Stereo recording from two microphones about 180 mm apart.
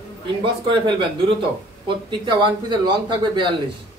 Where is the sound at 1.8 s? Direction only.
25° right (ahead or behind).